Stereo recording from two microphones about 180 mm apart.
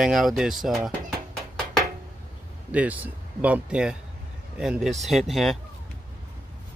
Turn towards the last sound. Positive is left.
turn(degrees=0)  # may be behind; listen again after turning